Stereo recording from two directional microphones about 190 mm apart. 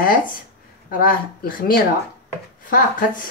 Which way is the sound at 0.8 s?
50° left (ahead or behind).